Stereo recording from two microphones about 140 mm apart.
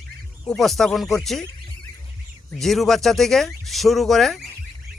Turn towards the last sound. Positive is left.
turn(degrees=0)  # may be behind; listen again after turning